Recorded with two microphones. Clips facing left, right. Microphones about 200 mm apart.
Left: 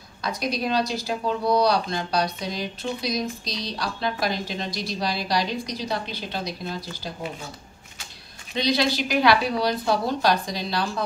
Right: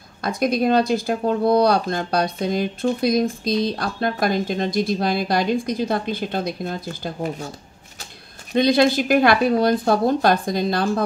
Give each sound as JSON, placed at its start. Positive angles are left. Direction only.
{"t": 0.2, "sound": "speech", "side_deg": -50}
{"t": 8.5, "sound": "speech", "side_deg": -50}